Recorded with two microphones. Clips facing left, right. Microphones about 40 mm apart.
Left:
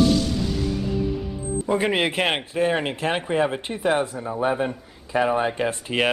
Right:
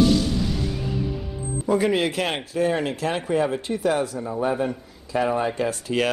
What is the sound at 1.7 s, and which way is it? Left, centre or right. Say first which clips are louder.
A man's voice: right 1 dB; left.